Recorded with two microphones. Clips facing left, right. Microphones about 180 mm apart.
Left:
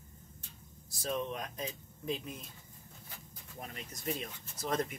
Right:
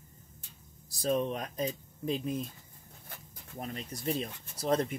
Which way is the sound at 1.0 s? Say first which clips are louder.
Right 6 dB; 35° right (ahead or behind).